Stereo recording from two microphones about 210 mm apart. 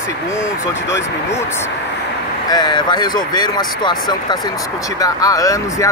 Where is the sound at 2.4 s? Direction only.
20° left (ahead or behind).